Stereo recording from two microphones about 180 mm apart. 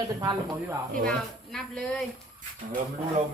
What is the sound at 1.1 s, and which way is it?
Speech, 5° left (ahead or behind).